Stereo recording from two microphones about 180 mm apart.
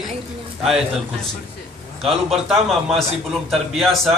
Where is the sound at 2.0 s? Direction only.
Centre (ahead or behind).